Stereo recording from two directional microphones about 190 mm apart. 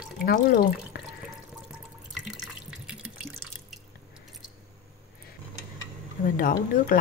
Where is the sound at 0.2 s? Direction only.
55° left (ahead or behind).